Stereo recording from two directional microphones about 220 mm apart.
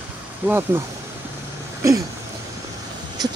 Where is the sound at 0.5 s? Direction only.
10° right (ahead or behind).